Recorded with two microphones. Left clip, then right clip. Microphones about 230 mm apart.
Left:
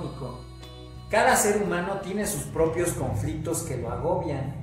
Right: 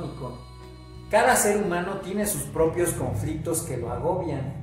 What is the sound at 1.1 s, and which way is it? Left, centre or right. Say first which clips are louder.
Speech: right 1 dB; centre.